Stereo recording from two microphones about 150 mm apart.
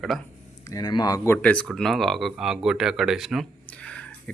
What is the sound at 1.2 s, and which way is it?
Speech, 10° left (ahead or behind).